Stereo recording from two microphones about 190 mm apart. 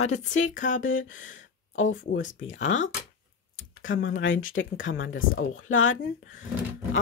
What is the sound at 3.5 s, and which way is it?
Speech, 85° left.